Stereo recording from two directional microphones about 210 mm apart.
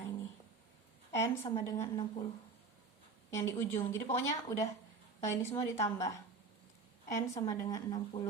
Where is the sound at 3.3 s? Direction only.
15° left (ahead or behind).